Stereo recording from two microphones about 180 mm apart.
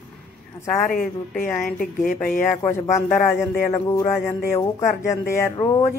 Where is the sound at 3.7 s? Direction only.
15° left (ahead or behind).